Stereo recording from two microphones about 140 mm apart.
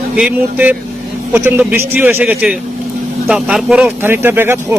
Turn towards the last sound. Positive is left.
turn(degrees=-15)  # may be behind; listen again after turning